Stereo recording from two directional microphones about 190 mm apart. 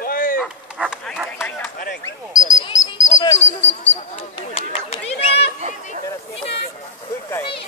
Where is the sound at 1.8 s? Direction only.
45° left (ahead or behind).